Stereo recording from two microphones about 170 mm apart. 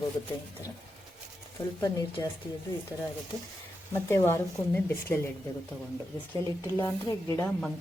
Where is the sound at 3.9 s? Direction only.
15° left (ahead or behind).